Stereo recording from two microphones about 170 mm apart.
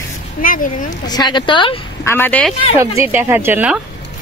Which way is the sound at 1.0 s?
25° left (ahead or behind).